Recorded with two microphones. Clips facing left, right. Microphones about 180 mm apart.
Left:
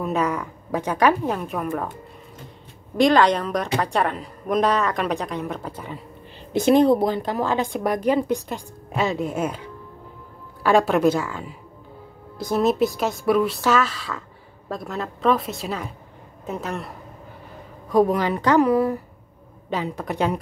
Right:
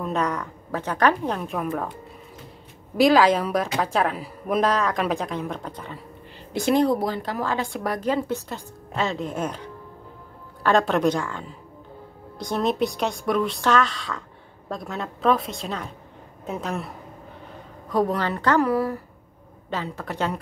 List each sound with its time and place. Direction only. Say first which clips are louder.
0.0 s speech: left 2 dB; 10° left (ahead or behind)
3.0 s a woman's voice: even; 5° right (ahead or behind)
6.5 s a woman's voice: left 4 dB; 20° left (ahead or behind); by 16.9 s centre (ahead or behind)
17.8 s speech: left 4 dB; 10° left (ahead or behind)